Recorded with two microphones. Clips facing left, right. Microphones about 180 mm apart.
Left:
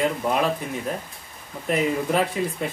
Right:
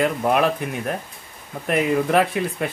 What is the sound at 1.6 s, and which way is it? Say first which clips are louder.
Speech: right 3 dB; 65° right (ahead or behind).